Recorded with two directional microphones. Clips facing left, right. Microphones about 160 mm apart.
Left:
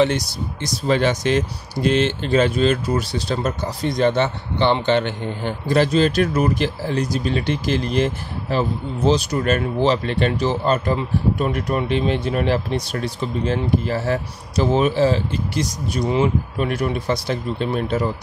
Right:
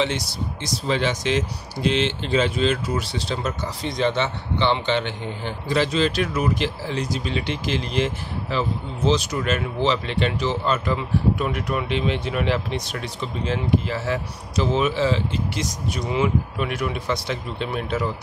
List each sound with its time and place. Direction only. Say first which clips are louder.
0.0 s speech: left 6 dB; 45° left (ahead or behind)